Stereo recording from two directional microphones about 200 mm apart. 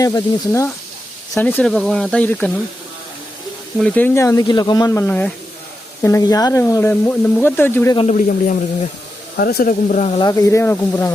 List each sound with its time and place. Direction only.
0.0 s speech: 15° left (ahead or behind)
3.8 s speech: 5° left (ahead or behind)
7.9 s speech: 35° left (ahead or behind)
9.4 s speech: 50° left (ahead or behind)
10.2 s speech: 15° left (ahead or behind)